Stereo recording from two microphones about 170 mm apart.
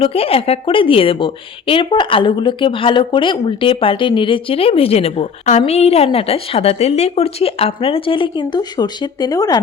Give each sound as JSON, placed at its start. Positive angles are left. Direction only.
{"t": 0.0, "sound": "a woman's voice", "side_deg": 35}